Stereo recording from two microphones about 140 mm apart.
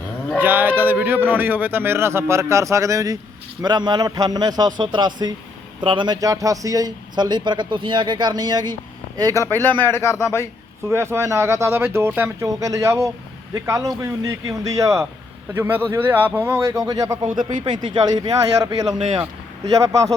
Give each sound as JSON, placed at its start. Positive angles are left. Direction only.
{"t": 0.3, "sound": "a man's voice", "side_deg": -15}
{"t": 9.6, "sound": "speech", "side_deg": 15}
{"t": 10.8, "sound": "a man's voice", "side_deg": -20}
{"t": 19.7, "sound": "a man's voice", "side_deg": -25}